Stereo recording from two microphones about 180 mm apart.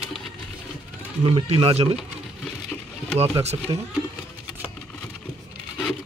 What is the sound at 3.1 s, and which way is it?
Speech, 35° right (ahead or behind).